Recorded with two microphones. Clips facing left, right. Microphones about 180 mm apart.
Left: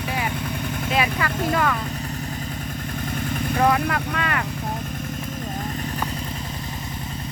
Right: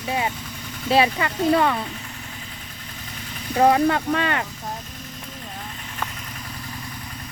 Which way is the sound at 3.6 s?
30° right (ahead or behind).